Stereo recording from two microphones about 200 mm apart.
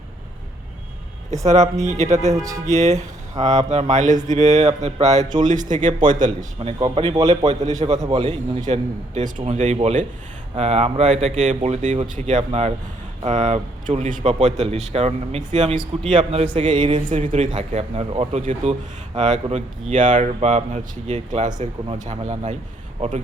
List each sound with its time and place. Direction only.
1.8 s speech: 35° right (ahead or behind)
2.3 s speech: 15° right (ahead or behind)
2.6 s speech: 35° right (ahead or behind)
6.7 s a man's voice: 25° right (ahead or behind)
8.2 s a man's voice: 35° right (ahead or behind)
17.1 s speech: 40° right (ahead or behind)